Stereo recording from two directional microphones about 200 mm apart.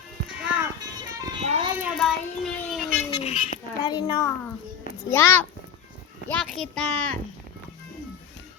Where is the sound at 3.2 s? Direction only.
35° left (ahead or behind).